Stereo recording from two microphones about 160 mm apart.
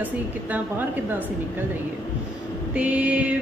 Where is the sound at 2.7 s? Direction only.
10° right (ahead or behind).